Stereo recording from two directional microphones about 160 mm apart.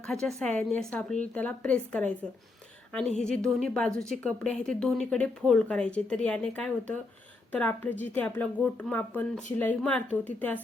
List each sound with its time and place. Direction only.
0.1 s speech: 5° left (ahead or behind)
3.2 s speech: 5° left (ahead or behind)